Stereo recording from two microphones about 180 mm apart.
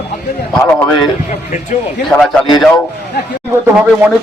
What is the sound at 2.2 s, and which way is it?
Speech, 5° left (ahead or behind).